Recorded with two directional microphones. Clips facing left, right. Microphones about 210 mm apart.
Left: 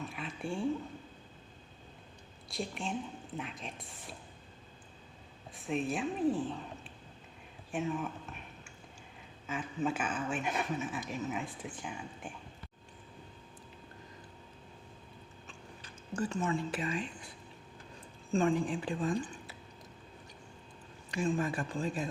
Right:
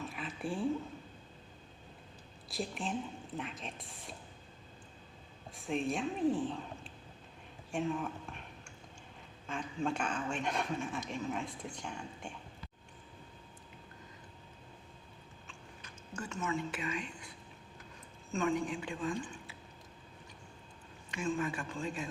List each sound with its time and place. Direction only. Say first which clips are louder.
0.0 s a sound: even; centre (ahead or behind)
2.5 s a woman's voice: even; centre (ahead or behind)
5.5 s speech: left 1 dB; centre (ahead or behind)
7.7 s a sound: even; centre (ahead or behind)
9.5 s speech: left 2 dB; 5° left (ahead or behind)
15.8 s speech: left 8 dB; 35° left (ahead or behind)
18.3 s a woman's voice: left 4 dB; 30° left (ahead or behind)
21.1 s speech: left 3 dB; 35° left (ahead or behind)